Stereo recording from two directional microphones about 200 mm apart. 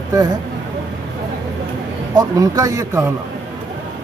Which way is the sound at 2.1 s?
15° right (ahead or behind).